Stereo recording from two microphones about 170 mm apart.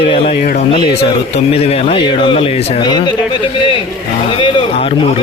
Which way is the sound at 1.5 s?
35° left (ahead or behind).